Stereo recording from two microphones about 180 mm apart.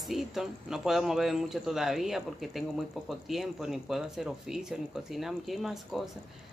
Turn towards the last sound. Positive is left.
turn(degrees=0)  # may be behind; listen again after turning